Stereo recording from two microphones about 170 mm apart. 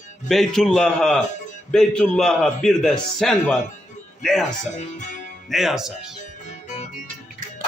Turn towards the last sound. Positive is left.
turn(degrees=0)  # may be behind; listen again after turning